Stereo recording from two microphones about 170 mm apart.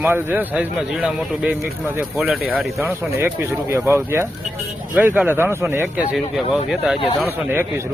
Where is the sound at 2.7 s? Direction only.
15° right (ahead or behind).